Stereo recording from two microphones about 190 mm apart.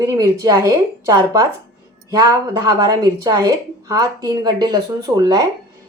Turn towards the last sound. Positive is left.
turn(degrees=-20)  # may be behind; listen again after turning